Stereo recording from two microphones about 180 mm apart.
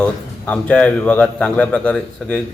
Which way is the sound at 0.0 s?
5° left (ahead or behind).